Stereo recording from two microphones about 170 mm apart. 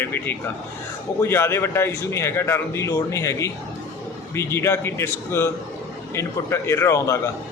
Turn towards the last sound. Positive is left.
turn(degrees=15)  # may be behind; listen again after turning